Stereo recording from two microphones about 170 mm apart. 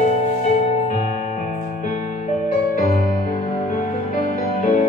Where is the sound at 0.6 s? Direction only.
45° left (ahead or behind).